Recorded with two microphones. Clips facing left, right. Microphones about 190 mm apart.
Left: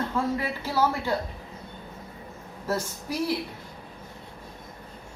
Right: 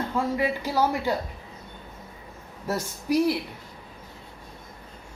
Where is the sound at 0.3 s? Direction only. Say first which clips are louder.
Right 2 dB; 15° right (ahead or behind).